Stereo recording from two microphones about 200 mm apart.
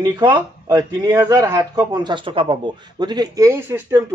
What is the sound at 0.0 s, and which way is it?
A man's voice, 20° right (ahead or behind).